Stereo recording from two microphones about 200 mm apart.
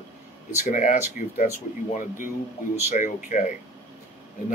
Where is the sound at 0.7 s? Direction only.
40° left (ahead or behind).